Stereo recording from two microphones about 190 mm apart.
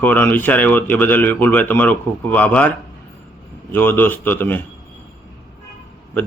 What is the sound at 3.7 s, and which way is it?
Speech, 10° left (ahead or behind).